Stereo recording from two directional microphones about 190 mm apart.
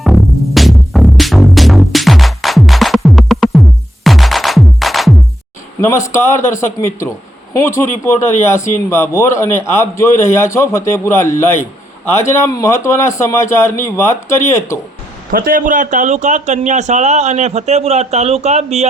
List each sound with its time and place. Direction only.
0.0 s music: centre (ahead or behind)
6.1 s speech: 15° left (ahead or behind)
15.3 s a man's voice: 50° right (ahead or behind)